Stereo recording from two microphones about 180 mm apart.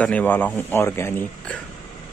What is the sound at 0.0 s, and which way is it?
Speech, 10° left (ahead or behind).